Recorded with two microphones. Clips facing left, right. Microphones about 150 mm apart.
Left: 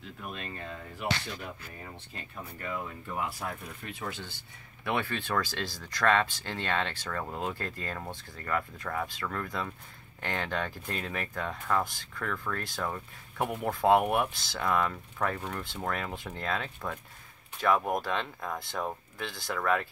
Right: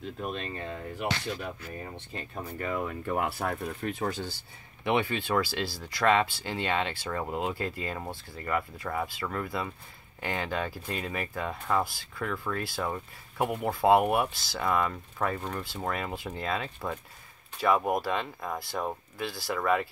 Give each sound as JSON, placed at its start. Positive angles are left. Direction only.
{"t": 0.2, "sound": "speech", "side_deg": -30}
{"t": 2.3, "sound": "speech", "side_deg": -50}
{"t": 4.8, "sound": "speech", "side_deg": -15}